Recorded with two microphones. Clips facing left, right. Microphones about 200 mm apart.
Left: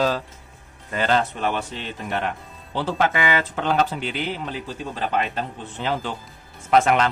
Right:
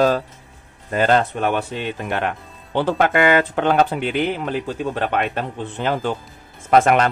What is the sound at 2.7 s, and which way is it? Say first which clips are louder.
Speech: right 5 dB; 55° right (ahead or behind).